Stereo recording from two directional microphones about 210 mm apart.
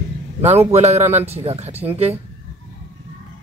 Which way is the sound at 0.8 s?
30° right (ahead or behind).